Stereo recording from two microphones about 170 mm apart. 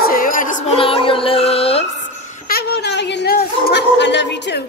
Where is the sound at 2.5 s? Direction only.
80° left.